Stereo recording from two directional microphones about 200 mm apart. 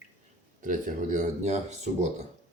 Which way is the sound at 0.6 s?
40° right (ahead or behind).